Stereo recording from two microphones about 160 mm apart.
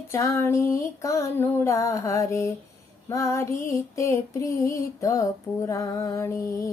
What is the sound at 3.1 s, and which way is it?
Female singing, 20° left (ahead or behind).